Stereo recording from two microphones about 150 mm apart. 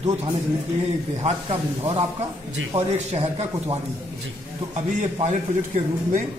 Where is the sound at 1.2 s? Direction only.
40° right (ahead or behind).